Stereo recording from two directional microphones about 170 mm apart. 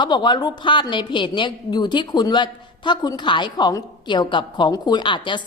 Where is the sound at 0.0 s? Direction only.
25° left (ahead or behind).